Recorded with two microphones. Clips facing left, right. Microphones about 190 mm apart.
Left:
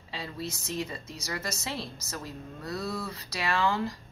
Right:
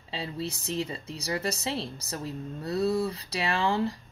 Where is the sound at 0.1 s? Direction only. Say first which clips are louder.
Right 3 dB; 30° right (ahead or behind).